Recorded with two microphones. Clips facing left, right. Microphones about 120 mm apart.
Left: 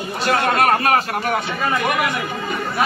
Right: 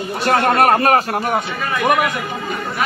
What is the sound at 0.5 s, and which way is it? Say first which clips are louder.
Speech: right 3 dB; 35° right (ahead or behind).